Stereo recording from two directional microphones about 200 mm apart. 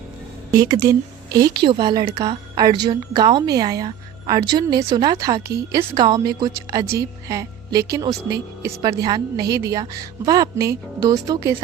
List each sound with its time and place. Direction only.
0.5 s a woman's voice: 20° right (ahead or behind)